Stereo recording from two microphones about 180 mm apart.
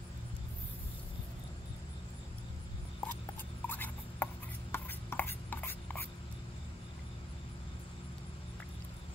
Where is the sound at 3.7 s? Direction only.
10° left (ahead or behind).